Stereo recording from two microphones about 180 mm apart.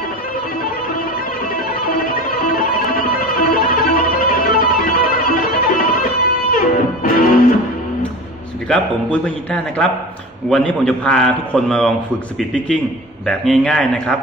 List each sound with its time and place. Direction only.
1.5 s music: 50° left (ahead or behind)
10.5 s a man's voice: 5° left (ahead or behind)